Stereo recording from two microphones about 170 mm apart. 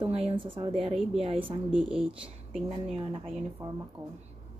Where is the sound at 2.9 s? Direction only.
35° right (ahead or behind).